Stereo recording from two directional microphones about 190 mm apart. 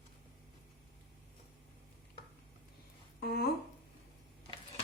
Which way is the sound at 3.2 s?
55° left (ahead or behind).